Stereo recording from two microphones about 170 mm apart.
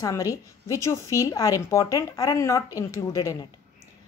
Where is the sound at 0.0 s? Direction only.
20° left (ahead or behind).